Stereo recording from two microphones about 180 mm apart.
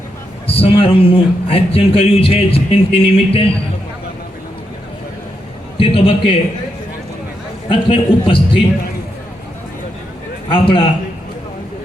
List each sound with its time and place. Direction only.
0.4 s a man's voice: 30° left (ahead or behind)
5.7 s a man's voice: 30° left (ahead or behind)
7.7 s a man's voice: 30° left (ahead or behind)
10.5 s a man's voice: 30° left (ahead or behind)